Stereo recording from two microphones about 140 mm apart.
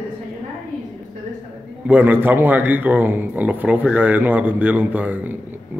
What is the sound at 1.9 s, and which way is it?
A man's voice, 10° right (ahead or behind).